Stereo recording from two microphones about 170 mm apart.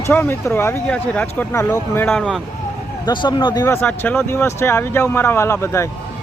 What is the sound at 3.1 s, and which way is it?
Speech, 25° left (ahead or behind).